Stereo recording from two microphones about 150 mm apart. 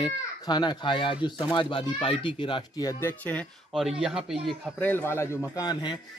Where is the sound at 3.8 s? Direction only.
5° right (ahead or behind).